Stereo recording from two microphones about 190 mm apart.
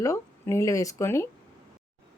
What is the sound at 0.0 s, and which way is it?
Speech, 15° left (ahead or behind).